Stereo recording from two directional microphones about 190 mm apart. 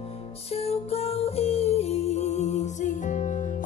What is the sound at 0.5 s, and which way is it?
Music, 30° left (ahead or behind).